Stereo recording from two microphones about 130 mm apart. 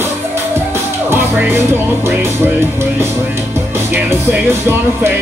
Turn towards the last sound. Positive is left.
turn(degrees=-15)  # may be behind; listen again after turning